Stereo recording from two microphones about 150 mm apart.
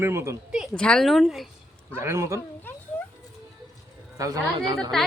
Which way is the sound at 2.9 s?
15° left (ahead or behind).